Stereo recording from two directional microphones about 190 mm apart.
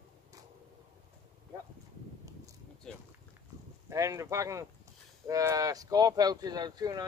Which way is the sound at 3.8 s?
15° right (ahead or behind).